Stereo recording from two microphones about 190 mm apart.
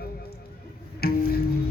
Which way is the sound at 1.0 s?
55° left (ahead or behind).